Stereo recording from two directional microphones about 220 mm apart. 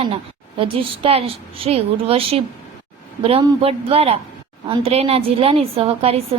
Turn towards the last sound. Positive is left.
turn(degrees=-25)  # may be behind; listen again after turning